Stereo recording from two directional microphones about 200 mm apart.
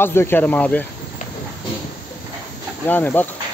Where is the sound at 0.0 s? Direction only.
10° left (ahead or behind).